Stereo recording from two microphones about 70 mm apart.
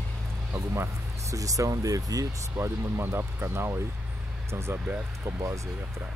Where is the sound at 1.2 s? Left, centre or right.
Right.